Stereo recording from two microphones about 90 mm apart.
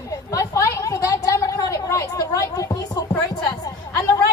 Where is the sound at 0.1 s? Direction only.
35° left (ahead or behind).